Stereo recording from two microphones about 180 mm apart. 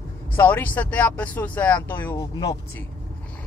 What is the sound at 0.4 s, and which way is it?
Speech, 10° left (ahead or behind).